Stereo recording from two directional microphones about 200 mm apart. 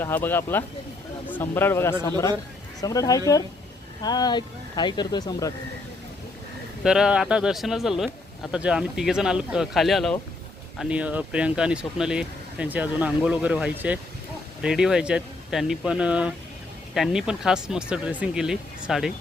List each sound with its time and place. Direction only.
0.0 s speech: 10° left (ahead or behind)
6.8 s speech: 5° right (ahead or behind)